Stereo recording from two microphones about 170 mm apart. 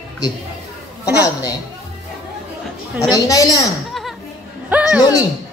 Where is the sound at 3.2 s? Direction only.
20° left (ahead or behind).